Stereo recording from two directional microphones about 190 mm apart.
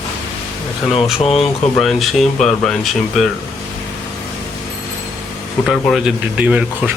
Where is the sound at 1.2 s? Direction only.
30° left (ahead or behind).